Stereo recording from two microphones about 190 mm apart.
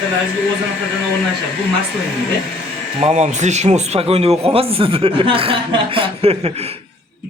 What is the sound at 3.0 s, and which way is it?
Speech, 35° right (ahead or behind).